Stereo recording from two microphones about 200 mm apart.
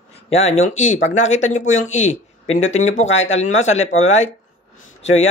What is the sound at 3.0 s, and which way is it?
Speech, 70° left (ahead or behind).